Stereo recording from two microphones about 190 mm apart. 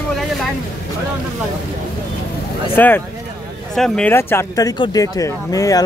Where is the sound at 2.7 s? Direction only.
10° left (ahead or behind).